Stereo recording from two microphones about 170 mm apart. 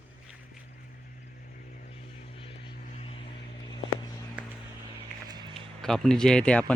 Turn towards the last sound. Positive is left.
turn(degrees=5)  # may be behind; listen again after turning